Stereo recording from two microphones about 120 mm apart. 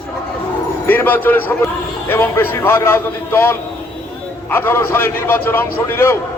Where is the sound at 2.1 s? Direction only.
20° left (ahead or behind).